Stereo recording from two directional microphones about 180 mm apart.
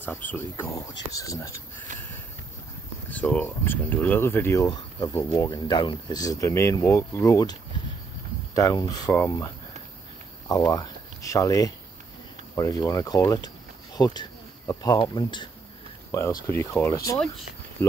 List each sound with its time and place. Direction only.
0.0 s speech: 10° left (ahead or behind)
3.2 s speech: 10° left (ahead or behind)
8.5 s speech: 20° left (ahead or behind)
10.5 s speech: 20° left (ahead or behind)